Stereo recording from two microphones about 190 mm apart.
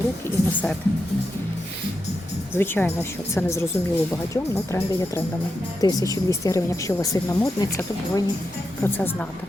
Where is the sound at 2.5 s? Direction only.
10° left (ahead or behind).